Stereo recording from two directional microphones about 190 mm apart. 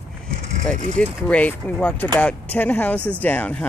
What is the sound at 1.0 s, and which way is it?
Speech, 5° left (ahead or behind).